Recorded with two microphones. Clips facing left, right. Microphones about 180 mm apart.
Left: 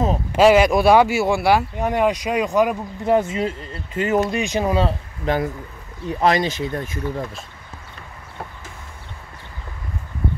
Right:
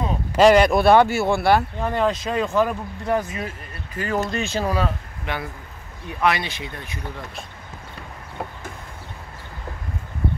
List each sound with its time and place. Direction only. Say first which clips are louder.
0.4 s speech: left 1 dB; 5° left (ahead or behind)
3.2 s speech: left 6 dB; 25° left (ahead or behind)
5.3 s speech: left 8 dB; 40° left (ahead or behind)